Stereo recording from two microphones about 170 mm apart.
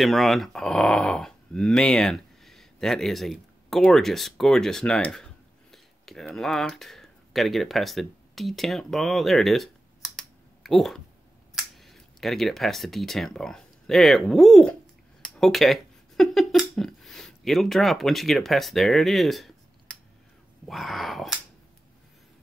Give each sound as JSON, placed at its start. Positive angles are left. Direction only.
{"t": 0.0, "sound": "speech", "side_deg": 0}
{"t": 20.6, "sound": "speech", "side_deg": 0}